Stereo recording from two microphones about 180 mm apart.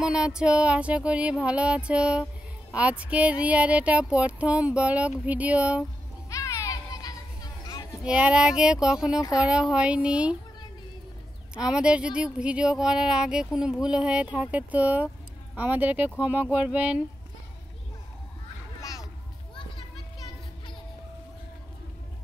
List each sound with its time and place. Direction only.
0.0 s a sound: 5° right (ahead or behind)
6.3 s children playing: 15° left (ahead or behind)
8.0 s speech: 5° right (ahead or behind)
11.5 s speech: 5° right (ahead or behind)
15.5 s a sound: 10° right (ahead or behind)
18.8 s music: 20° left (ahead or behind)